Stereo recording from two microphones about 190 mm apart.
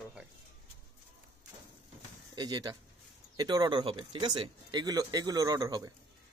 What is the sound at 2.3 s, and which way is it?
Speech, 20° right (ahead or behind).